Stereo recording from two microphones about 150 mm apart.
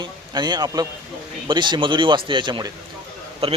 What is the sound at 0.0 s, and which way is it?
A man's voice, 30° right (ahead or behind).